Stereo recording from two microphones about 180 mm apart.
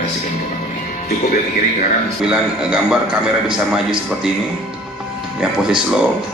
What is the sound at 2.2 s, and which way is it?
A man's voice, 5° right (ahead or behind).